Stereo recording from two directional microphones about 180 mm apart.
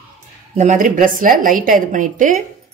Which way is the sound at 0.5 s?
45° right (ahead or behind).